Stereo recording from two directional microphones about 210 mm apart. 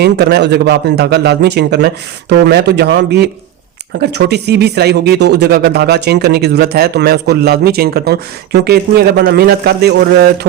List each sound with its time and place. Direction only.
0.0 s speech: 50° right (ahead or behind)